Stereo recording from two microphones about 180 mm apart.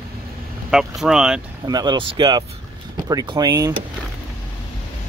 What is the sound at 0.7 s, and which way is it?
Speech, 5° right (ahead or behind).